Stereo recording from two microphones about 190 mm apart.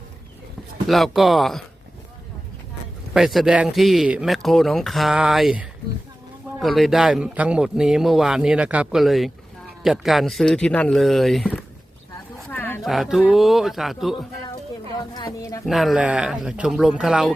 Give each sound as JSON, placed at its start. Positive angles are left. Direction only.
{"t": 0.9, "sound": "speech", "side_deg": 0}
{"t": 3.1, "sound": "speech", "side_deg": 0}
{"t": 12.5, "sound": "a sound", "side_deg": 10}
{"t": 12.8, "sound": "speech", "side_deg": 0}
{"t": 14.9, "sound": "a sound", "side_deg": 20}
{"t": 15.6, "sound": "speech", "side_deg": 0}